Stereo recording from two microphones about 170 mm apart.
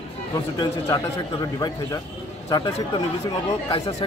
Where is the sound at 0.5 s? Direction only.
25° left (ahead or behind).